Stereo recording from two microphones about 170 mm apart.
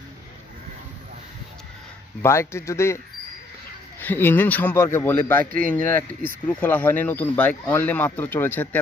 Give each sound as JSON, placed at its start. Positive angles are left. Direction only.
{"t": 2.2, "sound": "speech", "side_deg": 15}
{"t": 4.0, "sound": "speech", "side_deg": 10}